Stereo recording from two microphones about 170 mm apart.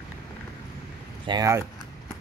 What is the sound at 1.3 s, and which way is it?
Speech, 20° right (ahead or behind).